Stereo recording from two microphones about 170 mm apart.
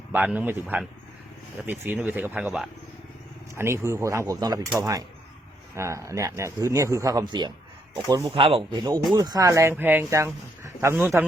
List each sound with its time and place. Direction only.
0.1 s speech: 10° right (ahead or behind)